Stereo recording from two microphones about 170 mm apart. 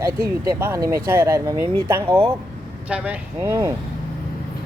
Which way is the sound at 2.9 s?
5° right (ahead or behind).